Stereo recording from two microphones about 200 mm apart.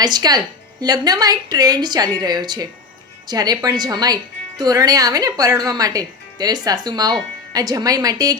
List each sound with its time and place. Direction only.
0.0 s speech: 20° right (ahead or behind)